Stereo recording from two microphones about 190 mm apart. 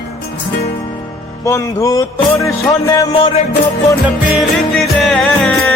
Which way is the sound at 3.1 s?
30° left (ahead or behind).